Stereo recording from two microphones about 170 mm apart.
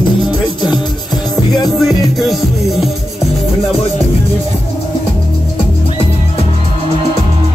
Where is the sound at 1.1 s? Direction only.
25° left (ahead or behind).